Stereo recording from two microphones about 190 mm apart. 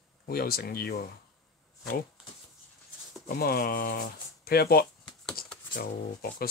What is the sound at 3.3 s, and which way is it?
Speech, 55° left (ahead or behind).